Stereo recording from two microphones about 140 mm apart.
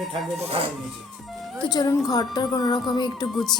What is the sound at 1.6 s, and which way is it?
Speech, 30° left (ahead or behind).